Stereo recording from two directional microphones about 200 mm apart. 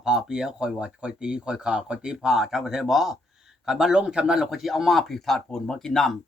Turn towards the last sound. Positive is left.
turn(degrees=0)  # may be behind; listen again after turning